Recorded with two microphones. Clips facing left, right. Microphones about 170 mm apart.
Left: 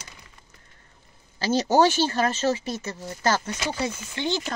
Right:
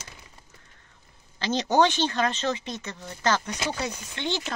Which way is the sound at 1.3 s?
5° left (ahead or behind).